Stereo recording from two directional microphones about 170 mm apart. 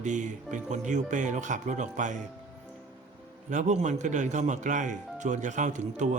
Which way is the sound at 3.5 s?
45° right (ahead or behind).